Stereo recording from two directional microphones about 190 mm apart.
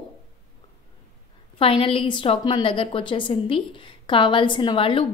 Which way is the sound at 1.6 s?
30° left (ahead or behind).